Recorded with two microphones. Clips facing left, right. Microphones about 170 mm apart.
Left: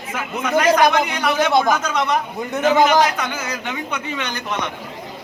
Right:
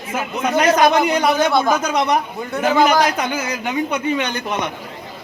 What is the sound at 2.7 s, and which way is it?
Speech, 20° left (ahead or behind).